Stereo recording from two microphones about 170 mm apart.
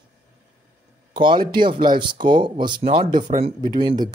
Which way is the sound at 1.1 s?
25° right (ahead or behind).